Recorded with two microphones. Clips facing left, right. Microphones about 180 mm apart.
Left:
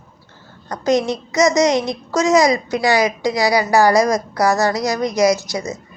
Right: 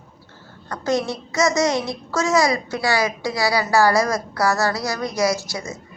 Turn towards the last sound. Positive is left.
turn(degrees=20)  # may be behind; listen again after turning